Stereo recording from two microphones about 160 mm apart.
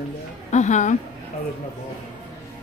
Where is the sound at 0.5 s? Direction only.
50° left (ahead or behind).